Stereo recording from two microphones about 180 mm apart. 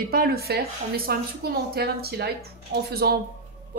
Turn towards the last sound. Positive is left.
turn(degrees=-50)  # may be behind; listen again after turning